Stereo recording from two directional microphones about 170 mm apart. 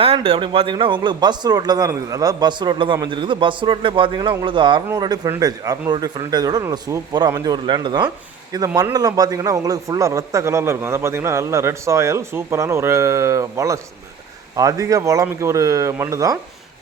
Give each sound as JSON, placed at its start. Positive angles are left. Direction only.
{"t": 0.0, "sound": "a man's voice", "side_deg": -35}